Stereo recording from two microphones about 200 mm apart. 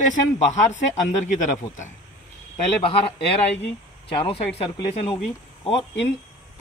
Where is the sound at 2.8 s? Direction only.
30° left (ahead or behind).